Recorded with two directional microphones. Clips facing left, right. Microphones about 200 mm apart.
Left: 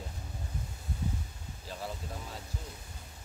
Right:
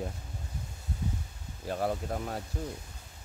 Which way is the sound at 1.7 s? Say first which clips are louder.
Right 10 dB; 55° right (ahead or behind).